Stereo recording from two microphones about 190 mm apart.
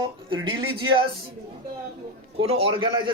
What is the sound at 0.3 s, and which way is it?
Speech, 25° right (ahead or behind).